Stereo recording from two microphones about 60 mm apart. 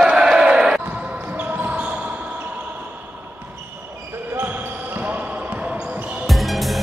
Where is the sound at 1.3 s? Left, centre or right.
Right.